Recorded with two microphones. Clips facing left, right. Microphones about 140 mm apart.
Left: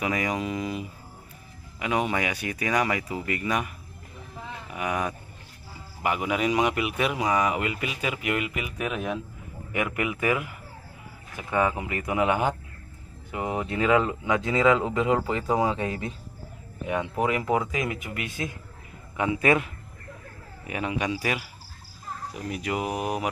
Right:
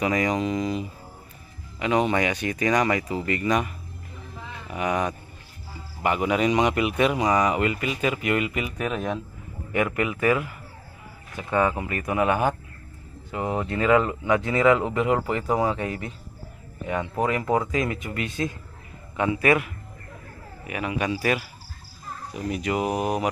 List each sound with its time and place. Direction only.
0.0 s speech: 5° left (ahead or behind)
13.6 s a man's voice: 15° left (ahead or behind)
21.0 s speech: 10° left (ahead or behind)